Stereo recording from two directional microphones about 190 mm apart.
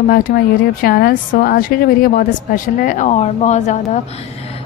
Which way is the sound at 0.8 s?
50° left (ahead or behind).